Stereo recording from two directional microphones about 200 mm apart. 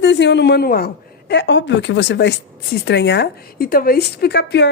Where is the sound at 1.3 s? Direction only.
60° left (ahead or behind).